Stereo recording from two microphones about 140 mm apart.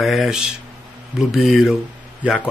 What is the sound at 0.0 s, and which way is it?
Speech, centre (ahead or behind).